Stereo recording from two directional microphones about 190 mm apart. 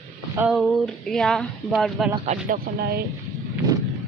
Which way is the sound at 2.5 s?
55° right (ahead or behind).